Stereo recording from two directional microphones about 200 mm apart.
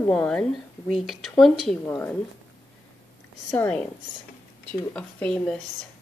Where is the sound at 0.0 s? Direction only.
5° left (ahead or behind).